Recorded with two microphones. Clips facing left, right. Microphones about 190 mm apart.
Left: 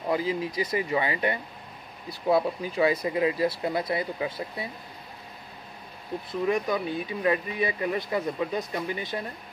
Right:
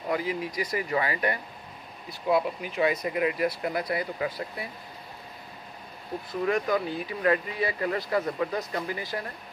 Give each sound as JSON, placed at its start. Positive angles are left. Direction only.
{"t": 0.1, "sound": "speech", "side_deg": 30}
{"t": 2.0, "sound": "speech", "side_deg": 35}
{"t": 6.4, "sound": "speech", "side_deg": 20}